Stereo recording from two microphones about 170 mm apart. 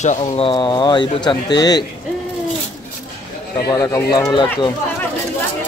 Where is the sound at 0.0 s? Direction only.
45° left (ahead or behind).